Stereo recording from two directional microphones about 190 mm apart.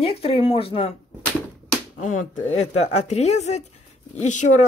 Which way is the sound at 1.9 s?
40° left (ahead or behind).